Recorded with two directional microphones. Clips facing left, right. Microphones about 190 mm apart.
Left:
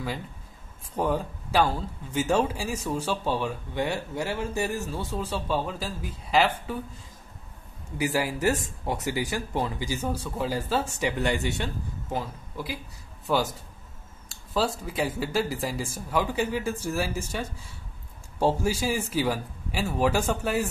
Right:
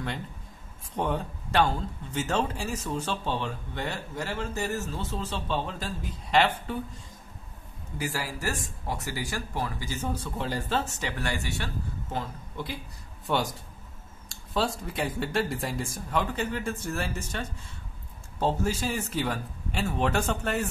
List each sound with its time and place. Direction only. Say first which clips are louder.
0.9 s a man's voice: left 3 dB; 5° left (ahead or behind)
8.0 s a man's voice: left 7 dB; 15° left (ahead or behind)
12.1 s a man's voice: left 4 dB; 10° left (ahead or behind)